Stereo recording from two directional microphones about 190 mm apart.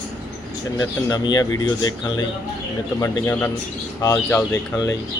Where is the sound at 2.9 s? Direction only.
15° left (ahead or behind).